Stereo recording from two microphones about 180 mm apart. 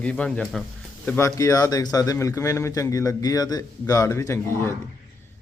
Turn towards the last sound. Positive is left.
turn(degrees=15)  # may be behind; listen again after turning